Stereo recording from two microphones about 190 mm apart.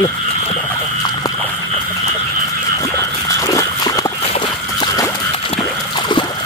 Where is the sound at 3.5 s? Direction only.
20° left (ahead or behind).